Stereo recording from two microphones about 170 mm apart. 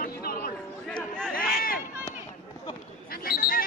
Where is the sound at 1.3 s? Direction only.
60° left (ahead or behind).